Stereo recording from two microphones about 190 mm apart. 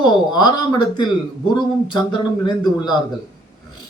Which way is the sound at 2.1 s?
25° left (ahead or behind).